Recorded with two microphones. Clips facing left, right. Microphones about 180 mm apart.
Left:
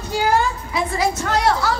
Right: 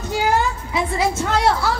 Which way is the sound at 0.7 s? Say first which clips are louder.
Right 1 dB; 25° right (ahead or behind).